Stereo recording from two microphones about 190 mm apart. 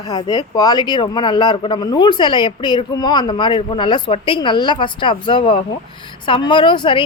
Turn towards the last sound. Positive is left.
turn(degrees=25)  # may be behind; listen again after turning